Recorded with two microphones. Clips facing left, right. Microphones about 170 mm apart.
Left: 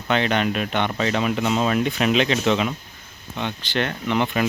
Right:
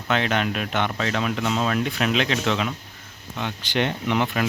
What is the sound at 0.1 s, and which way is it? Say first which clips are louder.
Speech: left 2 dB; centre (ahead or behind).